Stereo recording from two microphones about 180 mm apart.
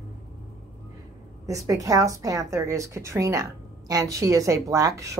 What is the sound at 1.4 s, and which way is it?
A woman's voice, 20° right (ahead or behind).